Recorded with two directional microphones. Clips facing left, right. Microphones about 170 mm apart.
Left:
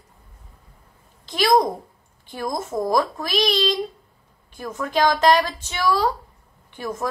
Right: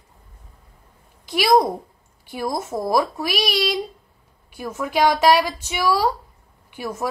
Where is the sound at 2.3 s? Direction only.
10° right (ahead or behind).